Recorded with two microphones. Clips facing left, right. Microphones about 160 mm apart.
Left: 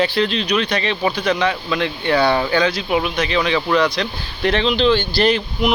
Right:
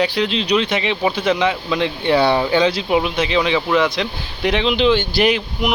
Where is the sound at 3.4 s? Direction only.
15° right (ahead or behind).